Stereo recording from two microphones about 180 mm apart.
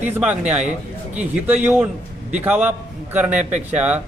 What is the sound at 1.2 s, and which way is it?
A man's voice, 5° right (ahead or behind).